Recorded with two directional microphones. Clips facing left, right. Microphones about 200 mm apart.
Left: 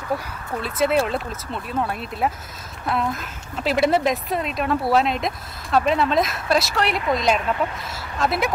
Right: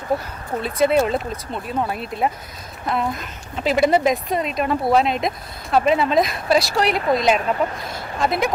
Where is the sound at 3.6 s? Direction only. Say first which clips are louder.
Right 2 dB; centre (ahead or behind).